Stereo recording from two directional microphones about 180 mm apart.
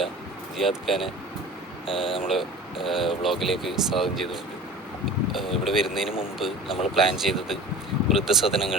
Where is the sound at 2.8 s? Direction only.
Centre (ahead or behind).